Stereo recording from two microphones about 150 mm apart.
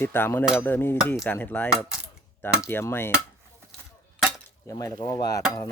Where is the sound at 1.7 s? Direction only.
5° right (ahead or behind).